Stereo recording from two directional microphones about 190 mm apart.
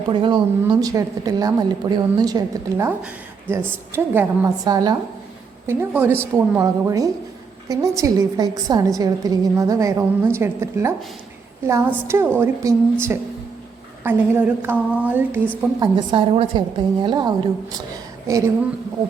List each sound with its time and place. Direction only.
0.1 s a woman's voice: 25° right (ahead or behind); by 15.4 s 10° right (ahead or behind)
15.8 s a woman's voice: 25° right (ahead or behind)